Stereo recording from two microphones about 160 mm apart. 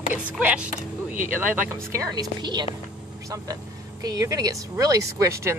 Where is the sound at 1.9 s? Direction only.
20° right (ahead or behind).